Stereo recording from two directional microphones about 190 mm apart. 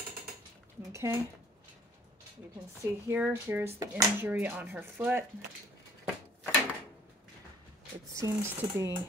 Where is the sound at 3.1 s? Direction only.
10° right (ahead or behind).